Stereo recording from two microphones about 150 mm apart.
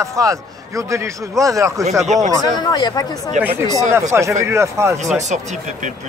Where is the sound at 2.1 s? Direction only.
50° right (ahead or behind).